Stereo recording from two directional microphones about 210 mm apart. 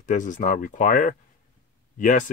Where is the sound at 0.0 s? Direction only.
35° left (ahead or behind).